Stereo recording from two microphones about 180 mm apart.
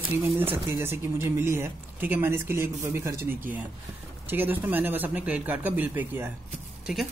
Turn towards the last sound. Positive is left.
turn(degrees=0)  # may be behind; listen again after turning